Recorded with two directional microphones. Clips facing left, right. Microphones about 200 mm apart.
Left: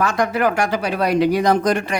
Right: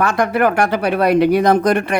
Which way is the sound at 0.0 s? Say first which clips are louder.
Right 3 dB; 60° right (ahead or behind).